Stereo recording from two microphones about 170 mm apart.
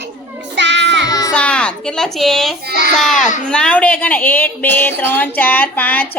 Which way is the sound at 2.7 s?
70° right (ahead or behind).